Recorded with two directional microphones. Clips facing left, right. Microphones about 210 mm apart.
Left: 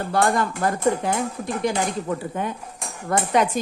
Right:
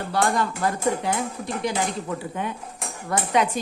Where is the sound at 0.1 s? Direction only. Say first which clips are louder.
Left 2 dB; 50° left (ahead or behind).